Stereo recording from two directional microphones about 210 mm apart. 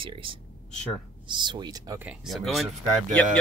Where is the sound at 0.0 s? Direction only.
25° right (ahead or behind).